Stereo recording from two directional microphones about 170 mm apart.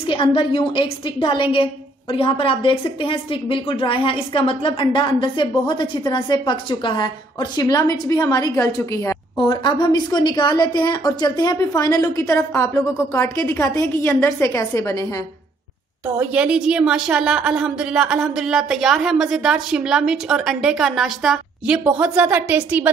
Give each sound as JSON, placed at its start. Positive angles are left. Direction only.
{"t": 0.0, "sound": "a woman's voice", "side_deg": 30}
{"t": 16.2, "sound": "a woman's voice", "side_deg": -5}